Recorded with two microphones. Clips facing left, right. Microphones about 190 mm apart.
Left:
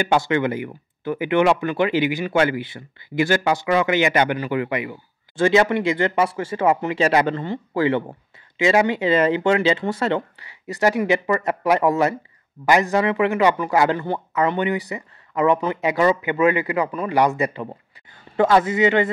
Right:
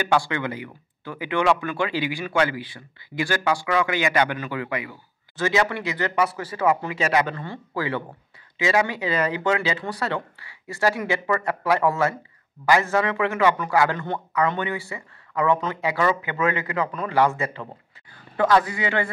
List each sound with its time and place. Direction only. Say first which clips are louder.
0.1 s a man's voice: left 4 dB; 20° left (ahead or behind)